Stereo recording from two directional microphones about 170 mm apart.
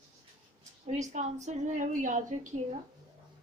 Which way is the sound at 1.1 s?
45° right (ahead or behind).